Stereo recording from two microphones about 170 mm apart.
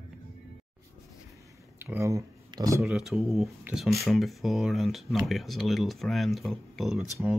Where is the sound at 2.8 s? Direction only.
Centre (ahead or behind).